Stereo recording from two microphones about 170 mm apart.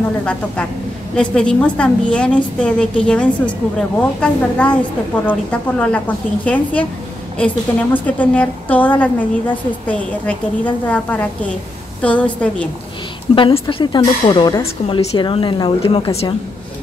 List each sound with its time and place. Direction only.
0.2 s a woman's voice: 5° left (ahead or behind)
13.3 s a woman's voice: 30° left (ahead or behind)
14.6 s a woman's voice: 35° left (ahead or behind)